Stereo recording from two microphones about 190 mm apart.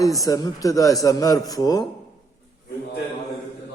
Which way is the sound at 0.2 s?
20° left (ahead or behind).